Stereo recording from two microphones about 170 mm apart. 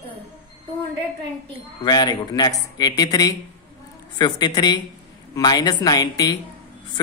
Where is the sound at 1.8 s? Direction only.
25° left (ahead or behind).